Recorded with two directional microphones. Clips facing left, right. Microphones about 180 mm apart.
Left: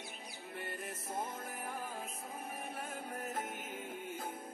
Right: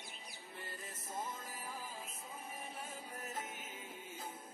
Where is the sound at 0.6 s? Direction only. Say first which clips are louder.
Left 7 dB; 65° left (ahead or behind).